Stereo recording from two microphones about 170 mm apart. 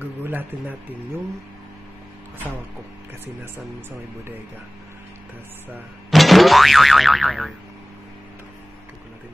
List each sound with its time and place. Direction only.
0.2 s speech: 10° right (ahead or behind)
6.0 s boing: centre (ahead or behind)